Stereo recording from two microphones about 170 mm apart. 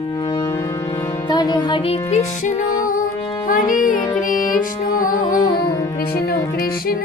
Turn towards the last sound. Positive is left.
turn(degrees=20)  # may be behind; listen again after turning